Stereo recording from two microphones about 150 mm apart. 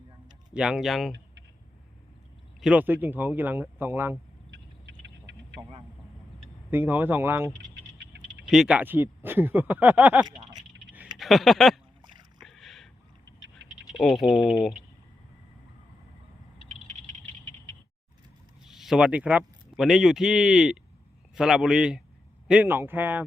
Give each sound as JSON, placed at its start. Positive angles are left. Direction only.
{"t": 0.5, "sound": "speech", "side_deg": -5}
{"t": 2.6, "sound": "speech", "side_deg": -10}
{"t": 6.7, "sound": "speech", "side_deg": -15}
{"t": 8.4, "sound": "speech", "side_deg": -5}
{"t": 10.2, "sound": "speech", "side_deg": -30}
{"t": 10.9, "sound": "a sound", "side_deg": -5}
{"t": 12.4, "sound": "rowboat", "side_deg": 0}
{"t": 13.9, "sound": "speech", "side_deg": 0}
{"t": 18.6, "sound": "speech", "side_deg": -5}